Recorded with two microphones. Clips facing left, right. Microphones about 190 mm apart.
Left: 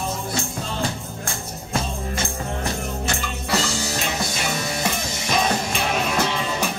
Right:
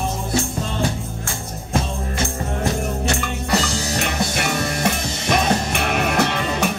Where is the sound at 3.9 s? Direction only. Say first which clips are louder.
Right 4 dB; 60° right (ahead or behind).